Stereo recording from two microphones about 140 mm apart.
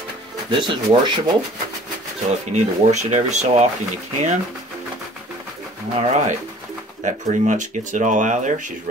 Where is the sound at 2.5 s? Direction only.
55° right (ahead or behind).